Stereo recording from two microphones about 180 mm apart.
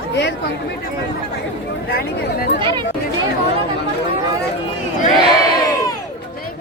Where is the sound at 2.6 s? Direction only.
25° right (ahead or behind).